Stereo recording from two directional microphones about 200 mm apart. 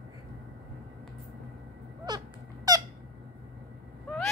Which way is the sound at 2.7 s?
15° right (ahead or behind).